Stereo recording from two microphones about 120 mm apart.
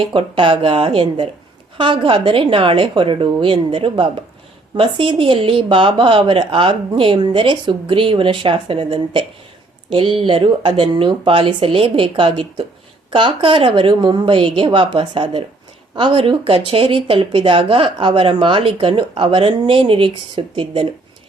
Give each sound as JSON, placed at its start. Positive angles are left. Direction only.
{"t": 0.0, "sound": "speech", "side_deg": -45}